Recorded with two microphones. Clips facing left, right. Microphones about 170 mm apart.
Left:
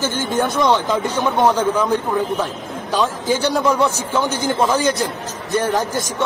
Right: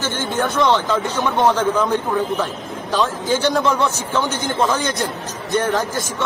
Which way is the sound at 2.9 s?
10° left (ahead or behind).